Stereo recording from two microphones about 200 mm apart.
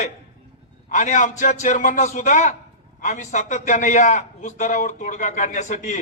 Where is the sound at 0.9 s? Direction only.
40° left (ahead or behind).